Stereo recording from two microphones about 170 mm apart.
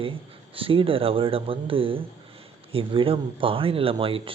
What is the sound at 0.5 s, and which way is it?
Speech, 30° right (ahead or behind).